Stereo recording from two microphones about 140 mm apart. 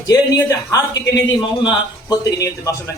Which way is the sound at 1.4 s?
30° left (ahead or behind).